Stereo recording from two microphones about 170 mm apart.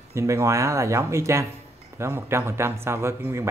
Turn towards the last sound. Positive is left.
turn(degrees=-15)  # may be behind; listen again after turning